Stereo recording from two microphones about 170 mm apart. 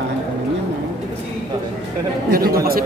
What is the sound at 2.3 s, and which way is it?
Speech, 60° right (ahead or behind).